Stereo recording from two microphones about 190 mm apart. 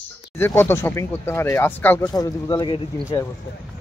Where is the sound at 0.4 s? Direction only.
10° left (ahead or behind).